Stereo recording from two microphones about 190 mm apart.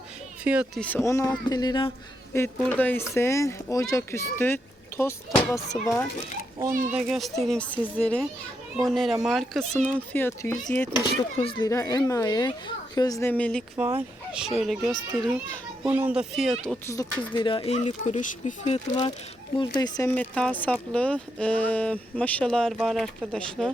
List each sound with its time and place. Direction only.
0.4 s speech: 5° right (ahead or behind)
0.8 s speech: 10° left (ahead or behind)
2.3 s speech: 10° left (ahead or behind)
5.7 s speech: centre (ahead or behind)
6.7 s a child's voice: 45° right (ahead or behind)
6.9 s speech: centre (ahead or behind)
16.8 s speech: 15° left (ahead or behind)
20.1 s speech: 5° left (ahead or behind)